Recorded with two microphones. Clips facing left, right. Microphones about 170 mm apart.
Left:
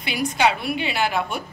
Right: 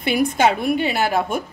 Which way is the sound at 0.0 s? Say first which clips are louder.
Right 4 dB; 50° right (ahead or behind).